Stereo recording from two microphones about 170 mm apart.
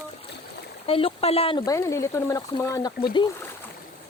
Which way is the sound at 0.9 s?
35° left (ahead or behind).